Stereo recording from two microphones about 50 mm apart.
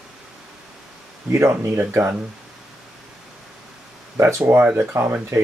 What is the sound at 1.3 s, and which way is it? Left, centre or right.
Speech, right.